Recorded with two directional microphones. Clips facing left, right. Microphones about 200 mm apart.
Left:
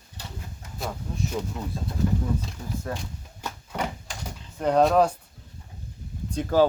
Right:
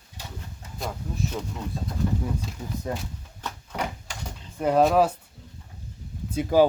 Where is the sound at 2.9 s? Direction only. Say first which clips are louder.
Right 3 dB; 20° right (ahead or behind).